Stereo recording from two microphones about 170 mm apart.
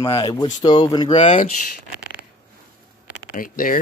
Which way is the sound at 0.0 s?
25° left (ahead or behind).